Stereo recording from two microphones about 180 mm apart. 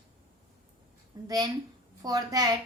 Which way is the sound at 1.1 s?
20° right (ahead or behind).